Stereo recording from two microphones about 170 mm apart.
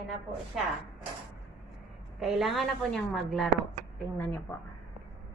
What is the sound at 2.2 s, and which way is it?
A woman's voice, centre (ahead or behind).